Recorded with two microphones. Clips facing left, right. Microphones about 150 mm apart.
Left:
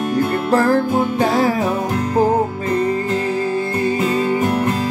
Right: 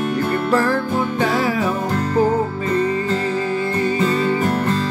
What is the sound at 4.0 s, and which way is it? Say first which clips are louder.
Music: left 1 dB; 15° left (ahead or behind).